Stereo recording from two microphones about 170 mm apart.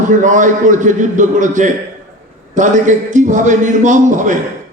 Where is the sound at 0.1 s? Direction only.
50° right (ahead or behind).